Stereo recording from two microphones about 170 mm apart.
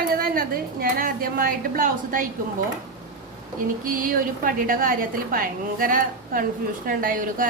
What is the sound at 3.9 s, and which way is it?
A woman's voice, 55° right (ahead or behind).